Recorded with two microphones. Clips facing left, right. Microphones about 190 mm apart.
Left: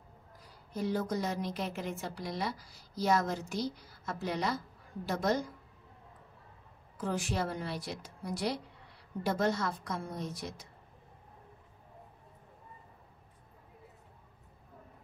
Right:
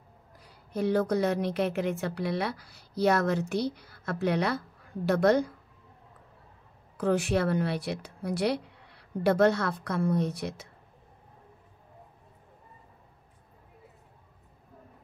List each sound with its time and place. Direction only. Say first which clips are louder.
0.4 s a woman's voice: right 6 dB; 65° right (ahead or behind)
7.0 s a woman's voice: right 8 dB; 65° right (ahead or behind)